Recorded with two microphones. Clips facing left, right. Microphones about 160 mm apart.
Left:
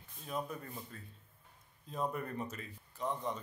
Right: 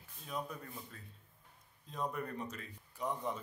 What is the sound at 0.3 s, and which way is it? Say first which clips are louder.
Speech: left 2 dB; centre (ahead or behind).